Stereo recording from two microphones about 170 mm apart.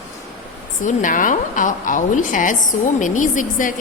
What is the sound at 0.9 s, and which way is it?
A woman's voice, 50° left (ahead or behind).